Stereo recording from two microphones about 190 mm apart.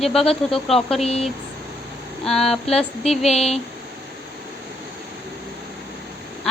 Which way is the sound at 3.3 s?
35° left (ahead or behind).